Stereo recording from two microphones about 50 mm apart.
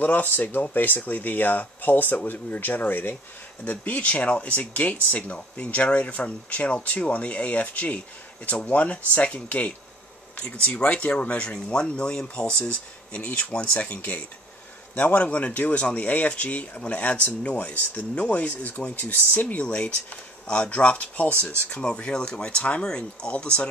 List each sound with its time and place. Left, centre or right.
0.0 s speech: left
15.0 s speech: left
19.5 s speech: left